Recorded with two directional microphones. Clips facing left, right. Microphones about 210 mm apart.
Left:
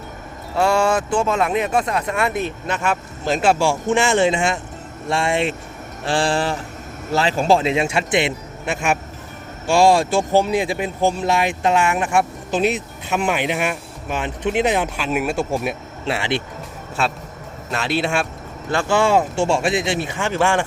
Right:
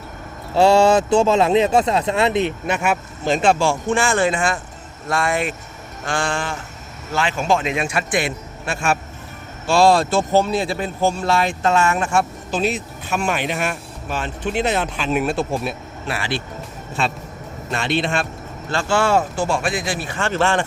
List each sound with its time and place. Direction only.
0.5 s speech: 25° right (ahead or behind)
3.2 s speech: 5° left (ahead or behind); by 5.5 s 25° left (ahead or behind)
6.1 s a sound: 35° left (ahead or behind)
7.1 s speech: 35° left (ahead or behind); by 15.7 s 15° left (ahead or behind)
16.0 s speech: 25° left (ahead or behind)
17.7 s speech: 5° left (ahead or behind)
19.4 s speech: 25° left (ahead or behind); by 20.7 s 10° left (ahead or behind)